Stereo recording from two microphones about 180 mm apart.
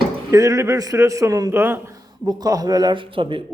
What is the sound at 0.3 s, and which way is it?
A man's voice, 20° right (ahead or behind).